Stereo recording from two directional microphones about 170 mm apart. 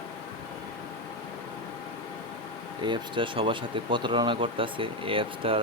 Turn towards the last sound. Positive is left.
turn(degrees=-30)  # may be behind; listen again after turning